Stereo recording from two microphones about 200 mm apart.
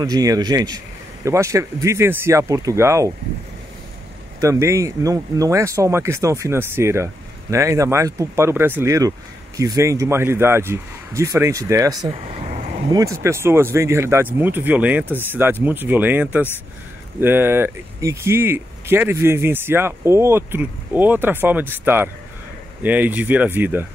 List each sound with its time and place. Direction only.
0.0 s speech: 20° right (ahead or behind)
4.4 s speech: 15° right (ahead or behind)
12.5 s vehicle: 40° right (ahead or behind)
12.9 s speech: 15° right (ahead or behind)